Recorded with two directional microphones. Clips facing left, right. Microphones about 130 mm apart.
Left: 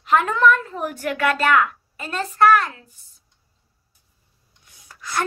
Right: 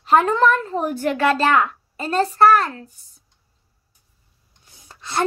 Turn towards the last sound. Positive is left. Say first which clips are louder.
# right 2 dB
turn(degrees=-25)  # may be behind; listen again after turning